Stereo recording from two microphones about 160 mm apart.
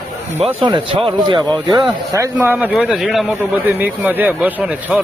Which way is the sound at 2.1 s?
15° right (ahead or behind).